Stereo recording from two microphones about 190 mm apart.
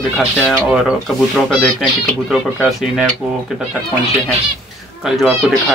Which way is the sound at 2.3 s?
Centre (ahead or behind).